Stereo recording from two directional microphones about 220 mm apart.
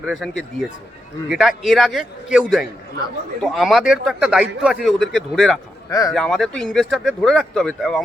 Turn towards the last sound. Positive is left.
turn(degrees=0)  # may be behind; listen again after turning